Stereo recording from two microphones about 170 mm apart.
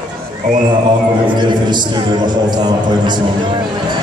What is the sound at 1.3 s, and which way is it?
A man's voice, 25° right (ahead or behind).